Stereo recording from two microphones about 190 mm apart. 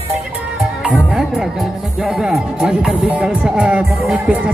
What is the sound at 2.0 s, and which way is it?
Speech, 5° right (ahead or behind).